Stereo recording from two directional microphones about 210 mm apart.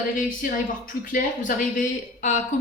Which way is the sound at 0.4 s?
40° left (ahead or behind).